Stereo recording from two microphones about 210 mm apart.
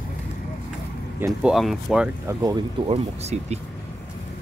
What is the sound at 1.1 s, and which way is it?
Speech, 5° right (ahead or behind).